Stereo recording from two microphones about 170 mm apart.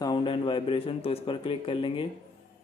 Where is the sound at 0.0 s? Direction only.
25° left (ahead or behind).